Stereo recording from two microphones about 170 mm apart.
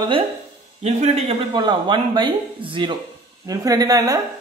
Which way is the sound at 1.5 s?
25° right (ahead or behind).